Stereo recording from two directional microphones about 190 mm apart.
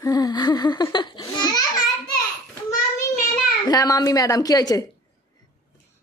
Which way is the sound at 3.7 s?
20° left (ahead or behind).